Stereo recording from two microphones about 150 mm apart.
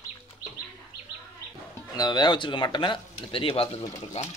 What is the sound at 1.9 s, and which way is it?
Speech, 25° left (ahead or behind).